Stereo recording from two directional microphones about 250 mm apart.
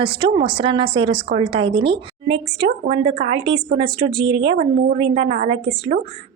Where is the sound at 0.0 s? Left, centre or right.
Centre.